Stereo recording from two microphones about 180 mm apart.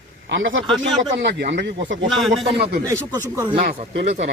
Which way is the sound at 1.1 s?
75° right (ahead or behind).